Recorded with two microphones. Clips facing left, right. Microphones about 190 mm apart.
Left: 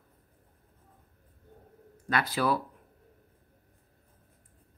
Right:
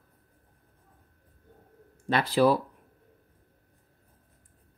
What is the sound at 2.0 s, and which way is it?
Speech, 30° right (ahead or behind).